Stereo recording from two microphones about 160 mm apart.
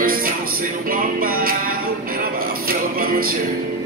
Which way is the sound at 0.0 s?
65° right (ahead or behind).